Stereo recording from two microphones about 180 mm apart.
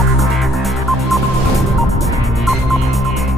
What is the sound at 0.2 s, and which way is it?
Music, centre (ahead or behind).